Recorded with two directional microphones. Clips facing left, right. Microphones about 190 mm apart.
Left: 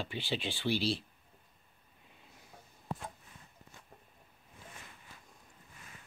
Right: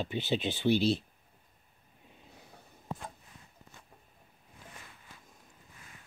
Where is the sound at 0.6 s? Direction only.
45° right (ahead or behind).